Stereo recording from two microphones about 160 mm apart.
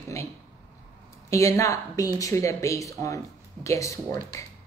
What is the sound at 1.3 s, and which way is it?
A woman's voice, 20° left (ahead or behind).